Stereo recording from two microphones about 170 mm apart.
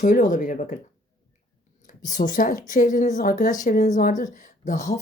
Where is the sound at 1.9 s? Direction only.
50° left (ahead or behind).